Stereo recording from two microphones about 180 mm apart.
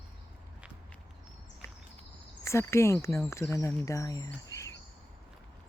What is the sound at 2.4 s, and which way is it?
Speech, 15° left (ahead or behind).